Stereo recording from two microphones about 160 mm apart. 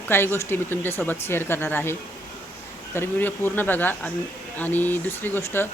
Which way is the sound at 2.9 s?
15° left (ahead or behind).